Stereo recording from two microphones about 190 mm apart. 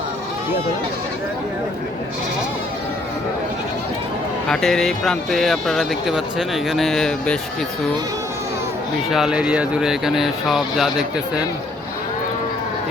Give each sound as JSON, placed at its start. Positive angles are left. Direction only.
{"t": 4.4, "sound": "speech", "side_deg": 5}
{"t": 9.0, "sound": "speech", "side_deg": 0}